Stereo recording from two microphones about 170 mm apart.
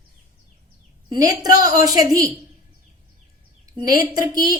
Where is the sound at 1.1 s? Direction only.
20° right (ahead or behind).